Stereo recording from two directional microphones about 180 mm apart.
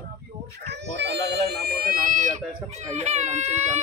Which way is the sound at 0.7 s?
65° right (ahead or behind).